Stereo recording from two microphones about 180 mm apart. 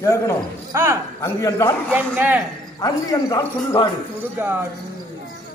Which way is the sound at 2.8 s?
20° left (ahead or behind).